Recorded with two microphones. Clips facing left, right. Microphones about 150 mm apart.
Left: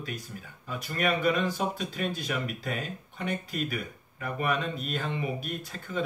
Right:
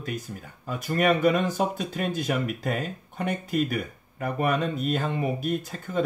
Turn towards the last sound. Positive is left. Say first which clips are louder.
# right 6 dB
turn(degrees=-45)  # may be behind; listen again after turning